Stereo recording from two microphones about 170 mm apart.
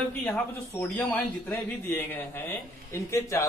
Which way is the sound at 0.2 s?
10° left (ahead or behind).